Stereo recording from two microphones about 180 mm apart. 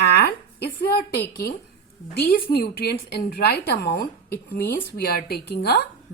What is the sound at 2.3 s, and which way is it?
A woman's voice, 55° left (ahead or behind).